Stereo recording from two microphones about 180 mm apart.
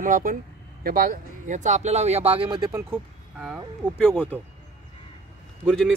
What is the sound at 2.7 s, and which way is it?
Speech, 10° right (ahead or behind).